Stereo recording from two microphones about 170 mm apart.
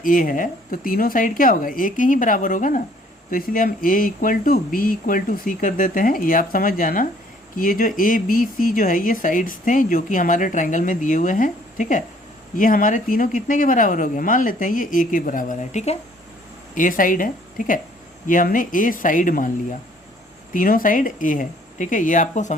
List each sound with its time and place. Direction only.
0.0 s speech: 50° left (ahead or behind)
16.7 s speech: 50° left (ahead or behind)
20.5 s speech: 55° left (ahead or behind)